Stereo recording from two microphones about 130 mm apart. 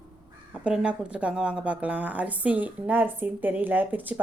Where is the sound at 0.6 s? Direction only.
5° right (ahead or behind).